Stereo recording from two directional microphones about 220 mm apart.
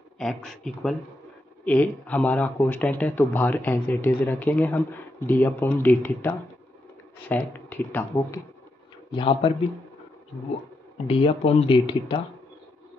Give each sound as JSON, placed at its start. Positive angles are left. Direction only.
{"t": 0.2, "sound": "speech", "side_deg": 0}
{"t": 9.1, "sound": "speech", "side_deg": 25}
{"t": 11.1, "sound": "speech", "side_deg": 25}